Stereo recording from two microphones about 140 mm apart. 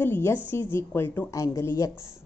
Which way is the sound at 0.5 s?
15° left (ahead or behind).